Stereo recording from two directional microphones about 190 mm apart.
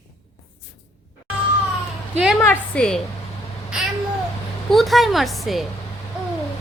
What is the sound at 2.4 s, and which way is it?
Speech, 10° left (ahead or behind).